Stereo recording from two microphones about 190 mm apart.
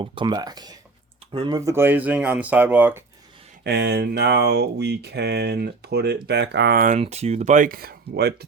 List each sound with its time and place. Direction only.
0.0 s speech: 25° right (ahead or behind)
3.6 s speech: 60° right (ahead or behind)
7.0 s speech: 35° right (ahead or behind); by 8.4 s 55° right (ahead or behind)